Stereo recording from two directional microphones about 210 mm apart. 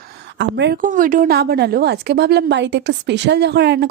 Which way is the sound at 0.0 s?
50° right (ahead or behind).